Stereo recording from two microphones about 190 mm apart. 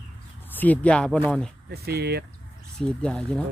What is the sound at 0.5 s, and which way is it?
Speech, 10° left (ahead or behind).